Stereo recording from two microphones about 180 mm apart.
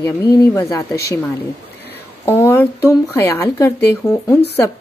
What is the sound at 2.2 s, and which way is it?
Speech, 10° left (ahead or behind).